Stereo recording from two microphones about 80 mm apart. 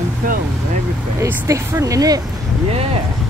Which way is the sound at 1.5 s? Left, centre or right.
Right.